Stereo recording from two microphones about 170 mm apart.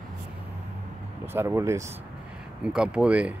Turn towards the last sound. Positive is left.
turn(degrees=-5)  # may be behind; listen again after turning